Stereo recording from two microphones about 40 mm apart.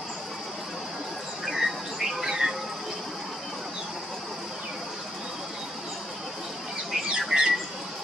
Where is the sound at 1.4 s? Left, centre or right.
Centre.